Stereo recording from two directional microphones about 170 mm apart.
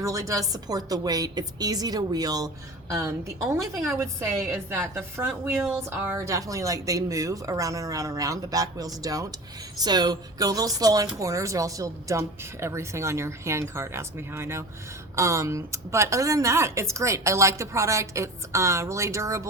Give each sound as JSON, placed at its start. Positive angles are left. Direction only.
{"t": 0.0, "sound": "a woman's voice", "side_deg": -20}